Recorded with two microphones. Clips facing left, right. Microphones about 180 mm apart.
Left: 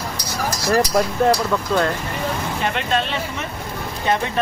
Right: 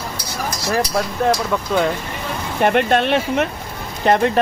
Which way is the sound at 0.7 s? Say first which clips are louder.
Left 3 dB; centre (ahead or behind).